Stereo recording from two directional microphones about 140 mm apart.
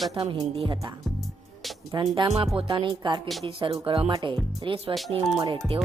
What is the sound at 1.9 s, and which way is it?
Speech, 35° right (ahead or behind).